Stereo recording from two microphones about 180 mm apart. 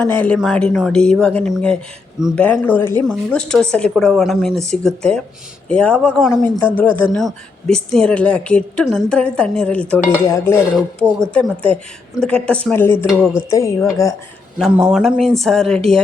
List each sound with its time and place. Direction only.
0.0 s speech: 10° left (ahead or behind)
13.1 s speech: centre (ahead or behind)
13.5 s speech: 15° left (ahead or behind)
14.6 s speech: 5° right (ahead or behind)